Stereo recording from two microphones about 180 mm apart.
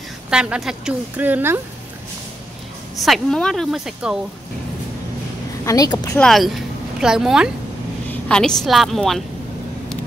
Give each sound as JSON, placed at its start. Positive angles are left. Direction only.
{"t": 0.3, "sound": "a woman's voice", "side_deg": -5}
{"t": 3.0, "sound": "speech", "side_deg": 0}
{"t": 5.7, "sound": "speech", "side_deg": 20}
{"t": 6.1, "sound": "speech", "side_deg": 0}
{"t": 8.1, "sound": "vehicle", "side_deg": 5}
{"t": 8.6, "sound": "speech", "side_deg": 0}